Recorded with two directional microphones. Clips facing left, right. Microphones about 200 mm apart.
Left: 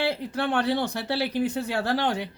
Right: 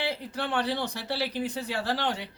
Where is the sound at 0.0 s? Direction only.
55° left (ahead or behind).